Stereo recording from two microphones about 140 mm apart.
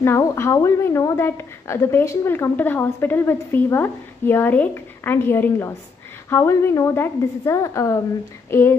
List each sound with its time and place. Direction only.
0.0 s a woman's voice: 20° left (ahead or behind)